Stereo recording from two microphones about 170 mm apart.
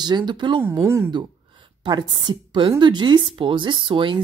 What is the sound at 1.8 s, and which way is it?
A woman's voice, 25° right (ahead or behind).